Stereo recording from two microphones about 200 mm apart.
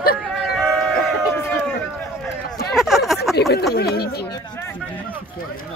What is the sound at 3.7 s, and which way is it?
Speech, 50° left (ahead or behind).